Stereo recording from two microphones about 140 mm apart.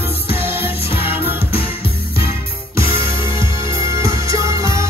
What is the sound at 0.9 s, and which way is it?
Music, 40° left (ahead or behind).